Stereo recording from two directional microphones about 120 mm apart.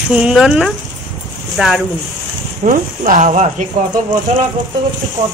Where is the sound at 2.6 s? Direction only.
90° right.